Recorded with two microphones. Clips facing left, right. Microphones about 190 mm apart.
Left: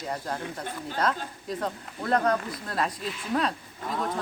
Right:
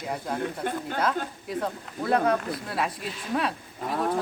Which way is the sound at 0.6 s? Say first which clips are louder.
Right 7 dB; 55° right (ahead or behind).